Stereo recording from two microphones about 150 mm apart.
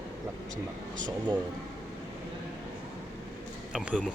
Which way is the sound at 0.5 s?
60° right (ahead or behind).